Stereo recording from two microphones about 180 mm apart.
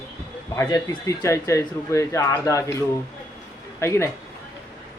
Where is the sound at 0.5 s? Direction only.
15° left (ahead or behind).